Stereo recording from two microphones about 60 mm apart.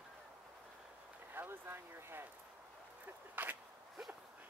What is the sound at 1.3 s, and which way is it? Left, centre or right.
Speech, right.